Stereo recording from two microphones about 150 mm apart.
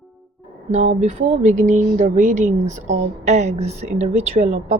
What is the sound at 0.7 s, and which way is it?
Speech, 45° right (ahead or behind).